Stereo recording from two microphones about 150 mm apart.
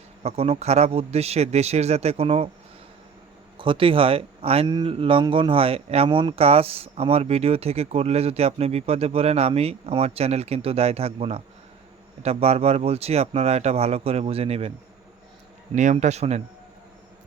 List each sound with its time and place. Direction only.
0.2 s speech: 45° right (ahead or behind)
3.6 s speech: 35° right (ahead or behind)
15.7 s speech: 55° right (ahead or behind)